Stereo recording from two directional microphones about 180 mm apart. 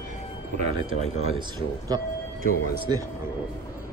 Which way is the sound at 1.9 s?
20° right (ahead or behind).